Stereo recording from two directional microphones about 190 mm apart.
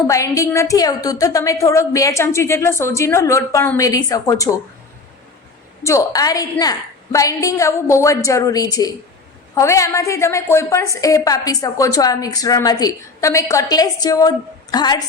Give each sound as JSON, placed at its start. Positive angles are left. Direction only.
{"t": 0.1, "sound": "a woman's voice", "side_deg": 15}
{"t": 5.8, "sound": "a woman's voice", "side_deg": 15}